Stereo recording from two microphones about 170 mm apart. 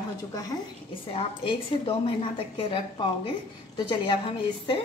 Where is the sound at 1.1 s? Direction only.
35° left (ahead or behind).